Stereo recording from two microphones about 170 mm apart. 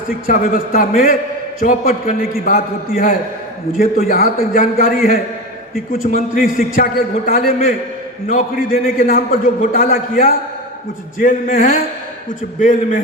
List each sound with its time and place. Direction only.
0.3 s a man's voice: 55° left (ahead or behind)
6.6 s a man's voice: 55° left (ahead or behind)